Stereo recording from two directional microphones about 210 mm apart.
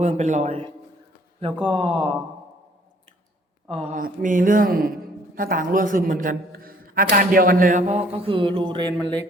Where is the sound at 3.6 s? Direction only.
25° right (ahead or behind).